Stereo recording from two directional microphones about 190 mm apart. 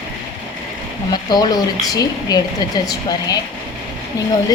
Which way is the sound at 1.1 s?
20° left (ahead or behind).